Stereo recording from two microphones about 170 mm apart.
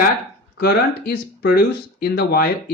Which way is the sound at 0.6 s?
65° left (ahead or behind).